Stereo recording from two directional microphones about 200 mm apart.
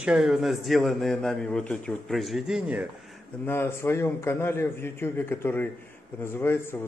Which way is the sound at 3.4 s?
10° left (ahead or behind).